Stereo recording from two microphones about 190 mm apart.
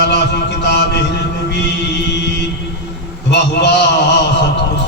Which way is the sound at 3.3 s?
65° left (ahead or behind).